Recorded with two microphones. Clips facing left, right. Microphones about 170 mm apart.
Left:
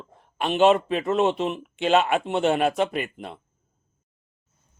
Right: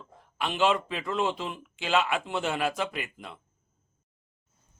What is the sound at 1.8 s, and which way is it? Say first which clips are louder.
A man's voice: left 6 dB; 55° left (ahead or behind).